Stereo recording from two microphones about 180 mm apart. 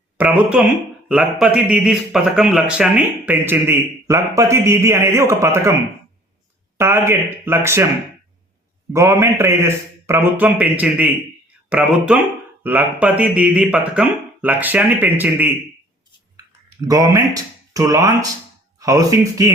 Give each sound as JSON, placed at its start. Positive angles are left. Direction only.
{"t": 0.2, "sound": "speech", "side_deg": -10}
{"t": 6.7, "sound": "speech", "side_deg": -15}
{"t": 8.9, "sound": "speech", "side_deg": -15}
{"t": 16.8, "sound": "speech", "side_deg": -20}